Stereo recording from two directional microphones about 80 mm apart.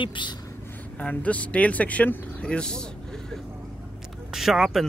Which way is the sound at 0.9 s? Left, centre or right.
Centre.